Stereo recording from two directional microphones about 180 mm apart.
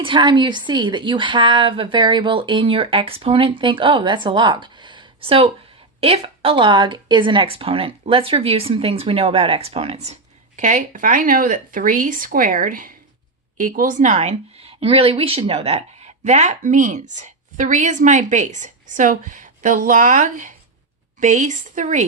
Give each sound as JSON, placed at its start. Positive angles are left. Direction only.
{"t": 0.0, "sound": "a woman's voice", "side_deg": -25}